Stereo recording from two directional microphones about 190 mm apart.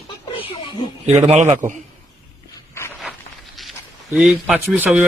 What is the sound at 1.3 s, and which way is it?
Speech, 40° right (ahead or behind).